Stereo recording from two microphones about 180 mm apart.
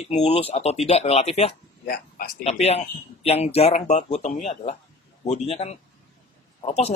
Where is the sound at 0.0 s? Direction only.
35° left (ahead or behind).